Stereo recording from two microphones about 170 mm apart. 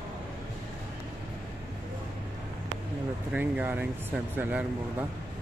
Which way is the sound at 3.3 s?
10° right (ahead or behind).